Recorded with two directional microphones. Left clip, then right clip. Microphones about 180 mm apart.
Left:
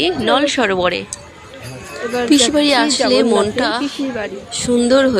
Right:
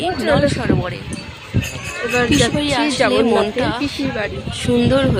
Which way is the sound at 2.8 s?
10° left (ahead or behind).